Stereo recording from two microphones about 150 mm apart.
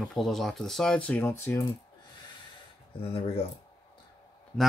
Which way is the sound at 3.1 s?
40° left (ahead or behind).